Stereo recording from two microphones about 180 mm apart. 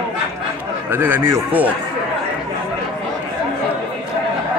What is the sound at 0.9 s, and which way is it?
Speech, 10° right (ahead or behind).